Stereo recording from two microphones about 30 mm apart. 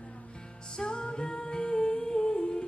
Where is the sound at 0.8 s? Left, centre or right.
Left.